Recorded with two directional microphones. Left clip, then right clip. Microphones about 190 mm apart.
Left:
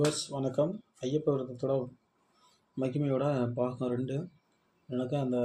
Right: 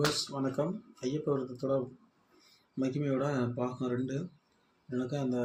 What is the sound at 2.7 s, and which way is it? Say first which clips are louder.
Speech: left 1 dB; 30° left (ahead or behind).